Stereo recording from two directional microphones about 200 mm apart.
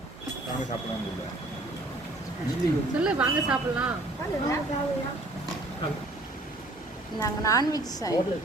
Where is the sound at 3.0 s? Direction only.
5° right (ahead or behind).